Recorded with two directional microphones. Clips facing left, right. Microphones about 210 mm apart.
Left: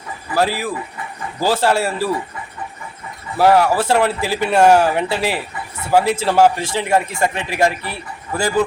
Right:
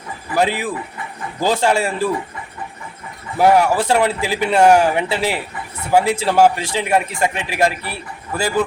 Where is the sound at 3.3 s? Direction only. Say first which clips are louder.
Even; 15° right (ahead or behind).